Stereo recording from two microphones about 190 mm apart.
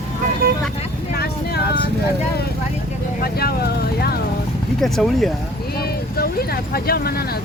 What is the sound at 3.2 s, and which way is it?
Speech, 55° left (ahead or behind).